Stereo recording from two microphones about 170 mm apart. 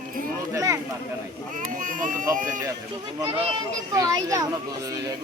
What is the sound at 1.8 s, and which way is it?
Speech, 50° right (ahead or behind).